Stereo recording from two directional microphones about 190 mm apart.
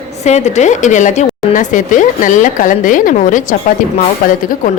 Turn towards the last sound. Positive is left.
turn(degrees=50)  # may be behind; listen again after turning